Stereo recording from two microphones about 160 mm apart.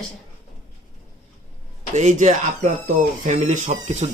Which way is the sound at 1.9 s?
45° right (ahead or behind).